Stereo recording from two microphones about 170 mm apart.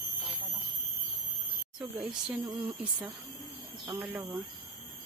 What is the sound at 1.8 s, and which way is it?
Speech, 5° right (ahead or behind).